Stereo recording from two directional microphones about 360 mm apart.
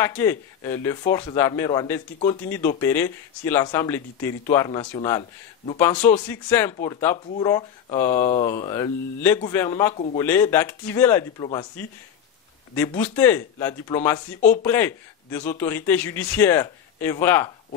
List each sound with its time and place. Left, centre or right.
0.0 s speech: centre